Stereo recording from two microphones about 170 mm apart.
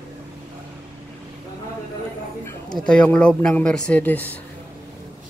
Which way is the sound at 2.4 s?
25° left (ahead or behind).